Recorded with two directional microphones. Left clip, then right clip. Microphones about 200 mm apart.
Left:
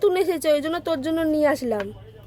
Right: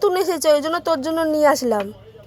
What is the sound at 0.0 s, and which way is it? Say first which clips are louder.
Speech: right 3 dB; centre (ahead or behind).